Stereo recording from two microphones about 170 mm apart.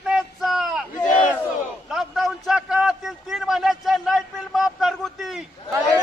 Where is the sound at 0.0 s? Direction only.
Centre (ahead or behind).